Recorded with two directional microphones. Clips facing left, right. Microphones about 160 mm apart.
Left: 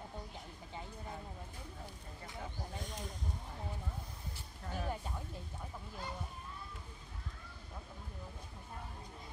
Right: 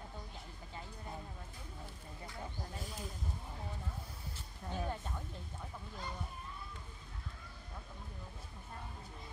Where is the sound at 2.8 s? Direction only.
5° right (ahead or behind).